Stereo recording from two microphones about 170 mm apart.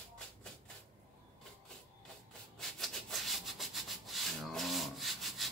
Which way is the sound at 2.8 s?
Centre (ahead or behind).